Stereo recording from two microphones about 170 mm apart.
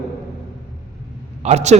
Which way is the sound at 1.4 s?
40° right (ahead or behind).